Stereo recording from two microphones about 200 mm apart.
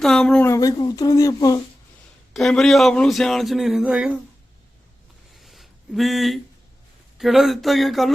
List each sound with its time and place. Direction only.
0.0 s speech: 5° left (ahead or behind)
2.3 s speech: centre (ahead or behind)
5.4 s a sound: centre (ahead or behind)
7.2 s speech: centre (ahead or behind)